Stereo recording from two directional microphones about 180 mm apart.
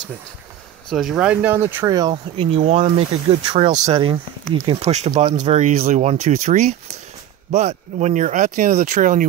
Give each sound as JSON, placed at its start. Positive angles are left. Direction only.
{"t": 0.8, "sound": "speech", "side_deg": 0}